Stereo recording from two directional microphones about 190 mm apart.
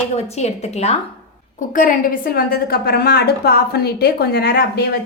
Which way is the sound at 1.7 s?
45° left (ahead or behind).